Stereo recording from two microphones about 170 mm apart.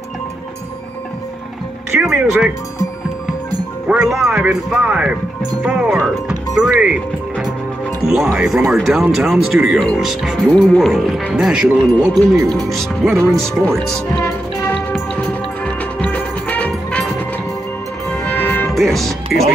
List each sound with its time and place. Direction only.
2.0 s speech: 5° right (ahead or behind)
3.8 s speech: 5° right (ahead or behind)
8.0 s speech: 5° right (ahead or behind)
12.1 s speech: 25° right (ahead or behind)
12.5 s speech: centre (ahead or behind)
14.2 s music: 10° left (ahead or behind)
18.3 s music: 10° left (ahead or behind)